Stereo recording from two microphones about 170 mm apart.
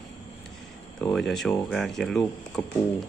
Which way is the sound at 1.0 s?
5° left (ahead or behind).